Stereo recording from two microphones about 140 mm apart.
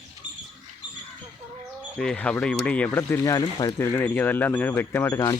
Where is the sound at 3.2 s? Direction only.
30° left (ahead or behind).